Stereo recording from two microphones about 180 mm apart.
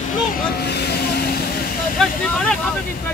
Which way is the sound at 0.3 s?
55° left (ahead or behind).